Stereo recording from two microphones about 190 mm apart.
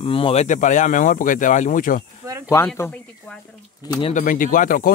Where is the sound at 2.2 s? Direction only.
15° right (ahead or behind).